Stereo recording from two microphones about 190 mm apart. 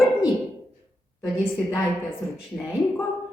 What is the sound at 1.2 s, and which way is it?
Speech, centre (ahead or behind).